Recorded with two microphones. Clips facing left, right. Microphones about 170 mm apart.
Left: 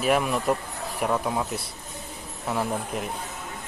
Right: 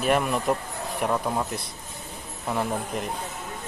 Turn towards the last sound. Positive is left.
turn(degrees=0)  # may be behind; listen again after turning